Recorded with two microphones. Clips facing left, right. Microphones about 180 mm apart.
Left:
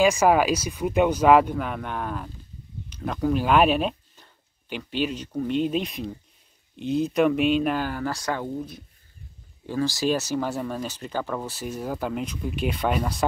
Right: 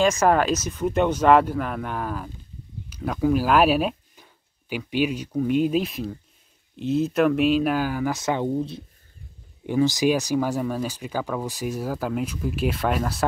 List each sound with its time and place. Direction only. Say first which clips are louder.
0.0 s speech: even; 10° left (ahead or behind); by 8.2 s 10° right (ahead or behind)
8.2 s speech: right 5 dB; 20° right (ahead or behind); by 13.2 s centre (ahead or behind)